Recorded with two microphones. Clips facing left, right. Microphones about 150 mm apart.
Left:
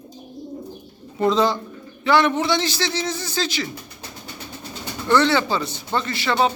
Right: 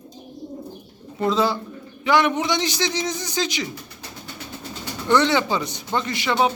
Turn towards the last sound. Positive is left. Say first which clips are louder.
# even
turn(degrees=-15)  # may be behind; listen again after turning